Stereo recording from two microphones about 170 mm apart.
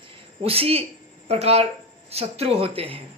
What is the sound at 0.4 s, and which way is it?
Speech, 35° right (ahead or behind).